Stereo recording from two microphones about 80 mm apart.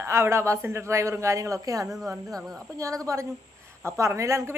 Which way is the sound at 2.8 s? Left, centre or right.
Right.